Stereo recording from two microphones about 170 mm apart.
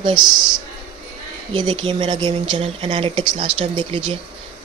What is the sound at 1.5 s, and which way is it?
Speech, 25° right (ahead or behind).